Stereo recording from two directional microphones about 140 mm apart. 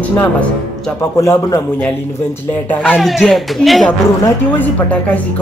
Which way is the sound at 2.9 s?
Centre (ahead or behind).